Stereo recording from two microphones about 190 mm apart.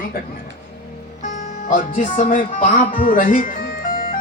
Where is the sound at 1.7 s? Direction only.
40° left (ahead or behind).